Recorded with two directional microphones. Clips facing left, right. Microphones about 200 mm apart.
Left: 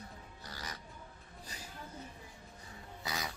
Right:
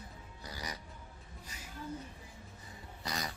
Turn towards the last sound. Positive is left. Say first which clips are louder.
# right 1 dB
turn(degrees=0)  # may be behind; listen again after turning